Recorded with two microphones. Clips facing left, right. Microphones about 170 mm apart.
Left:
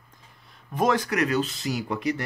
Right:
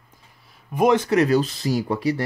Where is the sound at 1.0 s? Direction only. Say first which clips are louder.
Right 6 dB; 30° right (ahead or behind).